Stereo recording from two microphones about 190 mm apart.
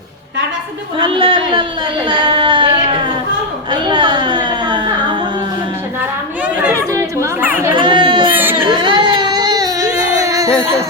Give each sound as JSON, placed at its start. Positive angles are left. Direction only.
{"t": 0.9, "sound": "speech", "side_deg": -25}
{"t": 2.0, "sound": "a sound", "side_deg": -25}
{"t": 6.6, "sound": "chatter", "side_deg": -10}
{"t": 7.8, "sound": "a sound", "side_deg": -25}
{"t": 8.3, "sound": "baby cry", "side_deg": -10}
{"t": 8.6, "sound": "baby cry", "side_deg": -25}